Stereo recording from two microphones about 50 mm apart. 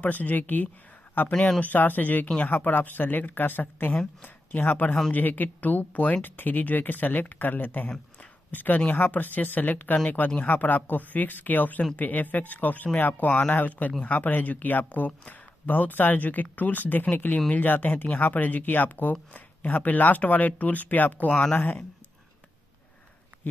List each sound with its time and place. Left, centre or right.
0.0 s speech: left
21.3 s speech: centre